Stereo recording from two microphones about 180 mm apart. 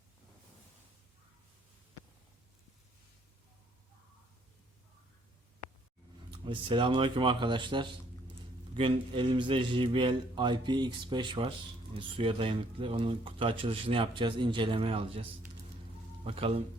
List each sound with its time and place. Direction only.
6.3 s speech: 25° right (ahead or behind)
16.2 s speech: 30° right (ahead or behind)